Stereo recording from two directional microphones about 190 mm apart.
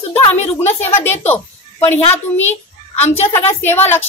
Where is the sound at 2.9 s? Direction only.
35° left (ahead or behind).